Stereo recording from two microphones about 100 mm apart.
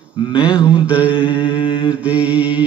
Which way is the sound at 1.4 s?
55° left (ahead or behind).